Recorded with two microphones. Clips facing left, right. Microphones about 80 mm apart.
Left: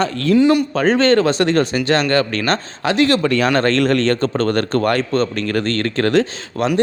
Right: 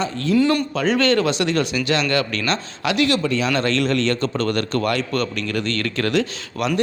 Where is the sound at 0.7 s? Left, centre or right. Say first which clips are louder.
Left 4 dB; left.